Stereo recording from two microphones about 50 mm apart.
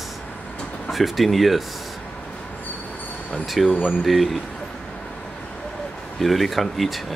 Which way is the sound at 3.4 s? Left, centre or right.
Centre.